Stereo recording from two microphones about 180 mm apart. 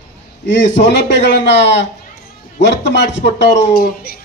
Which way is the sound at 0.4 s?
80° left.